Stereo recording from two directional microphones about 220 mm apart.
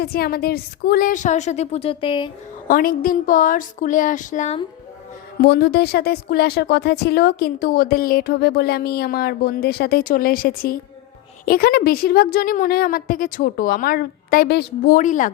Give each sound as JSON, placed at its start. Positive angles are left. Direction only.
{"t": 0.0, "sound": "a woman's voice", "side_deg": 45}
{"t": 2.6, "sound": "a woman's voice", "side_deg": 40}
{"t": 5.4, "sound": "a woman's voice", "side_deg": 45}